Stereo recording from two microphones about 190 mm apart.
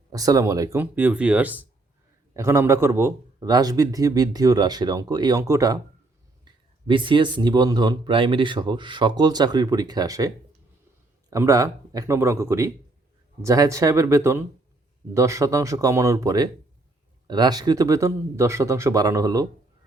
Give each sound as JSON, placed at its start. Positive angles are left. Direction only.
{"t": 0.1, "sound": "speech", "side_deg": -20}